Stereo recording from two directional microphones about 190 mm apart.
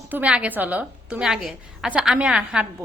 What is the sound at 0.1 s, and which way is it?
A woman's voice, 5° right (ahead or behind).